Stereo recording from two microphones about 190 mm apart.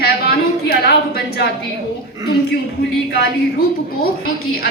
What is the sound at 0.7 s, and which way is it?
Speech, 55° left (ahead or behind).